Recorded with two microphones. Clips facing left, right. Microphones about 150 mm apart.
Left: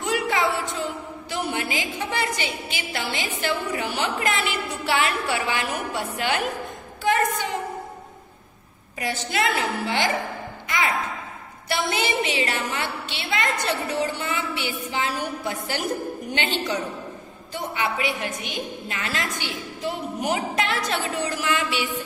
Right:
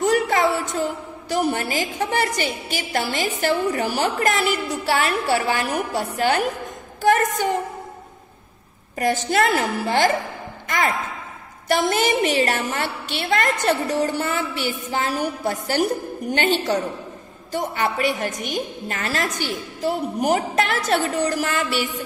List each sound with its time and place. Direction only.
0.0 s a sound: 45° right (ahead or behind)
1.3 s a woman's voice: 40° right (ahead or behind)
8.9 s a woman's voice: 45° right (ahead or behind)
11.7 s a woman's voice: 45° right (ahead or behind)